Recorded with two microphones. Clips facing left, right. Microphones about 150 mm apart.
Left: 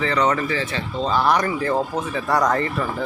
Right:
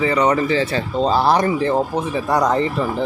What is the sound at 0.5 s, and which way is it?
Speech, 35° right (ahead or behind).